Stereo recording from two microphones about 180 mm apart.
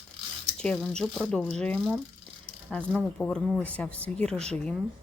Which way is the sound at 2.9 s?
Centre (ahead or behind).